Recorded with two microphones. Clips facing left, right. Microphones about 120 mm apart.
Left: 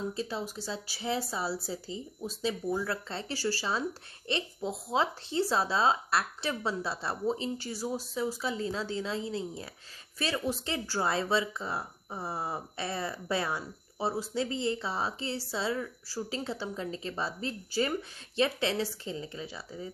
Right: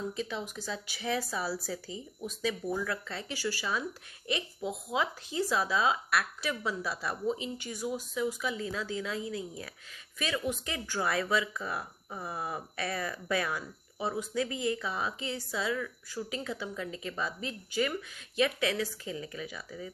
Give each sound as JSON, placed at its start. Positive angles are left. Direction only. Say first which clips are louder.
{"t": 0.1, "sound": "speech", "louder": "left 1 dB", "side_deg": 35}